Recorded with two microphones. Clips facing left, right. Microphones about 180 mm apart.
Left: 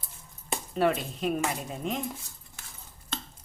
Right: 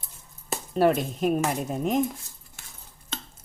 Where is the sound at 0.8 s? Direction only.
40° right (ahead or behind).